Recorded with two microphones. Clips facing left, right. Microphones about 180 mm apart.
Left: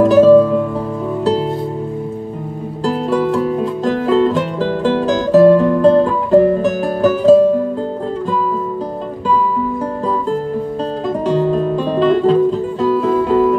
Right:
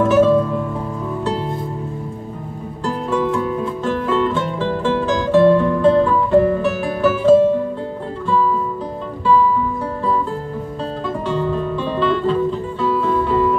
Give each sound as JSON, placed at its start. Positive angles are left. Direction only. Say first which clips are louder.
{"t": 0.0, "sound": "music", "louder": "left 6 dB", "side_deg": 35}
{"t": 2.8, "sound": "music", "louder": "left 4 dB", "side_deg": 35}
{"t": 11.2, "sound": "music", "louder": "left 6 dB", "side_deg": 40}